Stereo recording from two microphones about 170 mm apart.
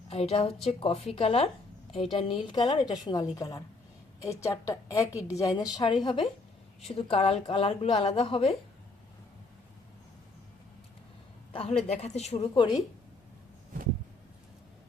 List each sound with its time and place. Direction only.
0.1 s a woman's voice: 35° left (ahead or behind)
11.5 s a woman's voice: 35° left (ahead or behind)